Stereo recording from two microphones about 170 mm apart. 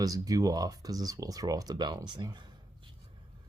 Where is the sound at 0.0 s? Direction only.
20° right (ahead or behind).